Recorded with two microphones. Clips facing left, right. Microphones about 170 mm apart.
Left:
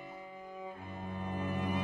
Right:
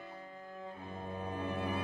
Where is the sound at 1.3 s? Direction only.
Centre (ahead or behind).